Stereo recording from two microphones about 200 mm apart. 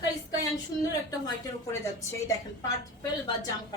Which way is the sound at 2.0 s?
15° left (ahead or behind).